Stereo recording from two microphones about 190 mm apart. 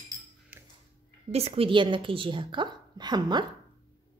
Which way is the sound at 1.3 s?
35° right (ahead or behind).